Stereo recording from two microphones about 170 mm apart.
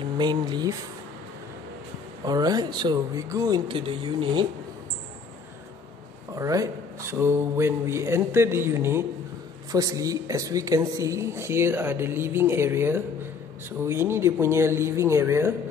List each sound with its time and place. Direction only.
0.2 s speech: 25° right (ahead or behind)
2.2 s speech: 20° right (ahead or behind)
6.3 s speech: 20° right (ahead or behind)